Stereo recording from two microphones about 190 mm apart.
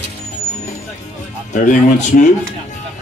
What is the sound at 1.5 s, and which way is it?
Speech, 40° left (ahead or behind).